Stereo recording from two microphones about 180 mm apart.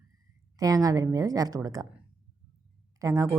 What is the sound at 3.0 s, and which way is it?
Speech, 20° right (ahead or behind).